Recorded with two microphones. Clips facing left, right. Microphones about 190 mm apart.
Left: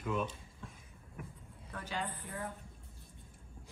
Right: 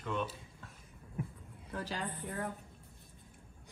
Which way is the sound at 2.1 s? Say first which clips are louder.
Right 3 dB; 60° right (ahead or behind).